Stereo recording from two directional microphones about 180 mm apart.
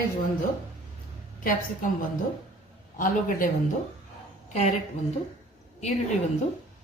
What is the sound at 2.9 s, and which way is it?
Speech, 50° left (ahead or behind).